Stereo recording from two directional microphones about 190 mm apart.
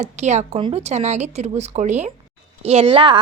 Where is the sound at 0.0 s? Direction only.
35° right (ahead or behind).